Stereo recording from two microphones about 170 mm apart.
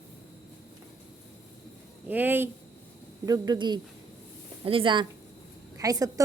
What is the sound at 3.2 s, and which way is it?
Speech, 25° right (ahead or behind).